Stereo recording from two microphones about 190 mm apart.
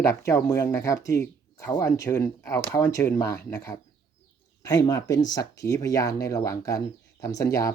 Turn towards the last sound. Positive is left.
turn(degrees=15)  # may be behind; listen again after turning